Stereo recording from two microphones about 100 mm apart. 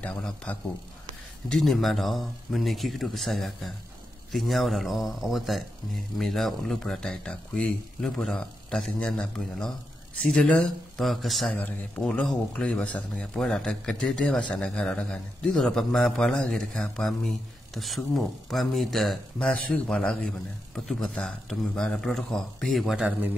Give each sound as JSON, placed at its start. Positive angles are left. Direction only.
{"t": 0.0, "sound": "a man's voice", "side_deg": 15}
{"t": 1.5, "sound": "speech", "side_deg": 0}
{"t": 11.5, "sound": "a man's voice", "side_deg": 15}
{"t": 12.0, "sound": "speech", "side_deg": 5}